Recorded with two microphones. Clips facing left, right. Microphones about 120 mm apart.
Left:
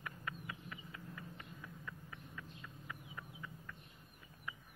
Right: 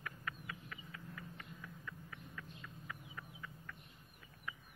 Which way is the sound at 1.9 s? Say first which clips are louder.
Even; 15° left (ahead or behind).